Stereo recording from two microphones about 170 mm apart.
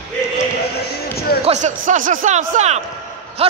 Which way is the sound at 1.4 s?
45° right (ahead or behind).